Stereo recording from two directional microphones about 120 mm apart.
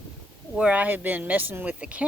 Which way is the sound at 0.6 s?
10° right (ahead or behind).